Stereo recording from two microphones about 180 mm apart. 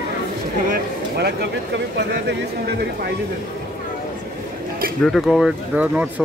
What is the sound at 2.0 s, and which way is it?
Speech, 70° right (ahead or behind).